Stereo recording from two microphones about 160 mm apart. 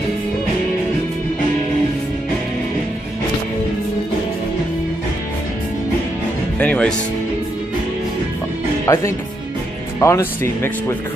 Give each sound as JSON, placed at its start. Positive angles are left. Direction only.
{"t": 6.6, "sound": "music", "side_deg": 5}
{"t": 8.8, "sound": "speech", "side_deg": 15}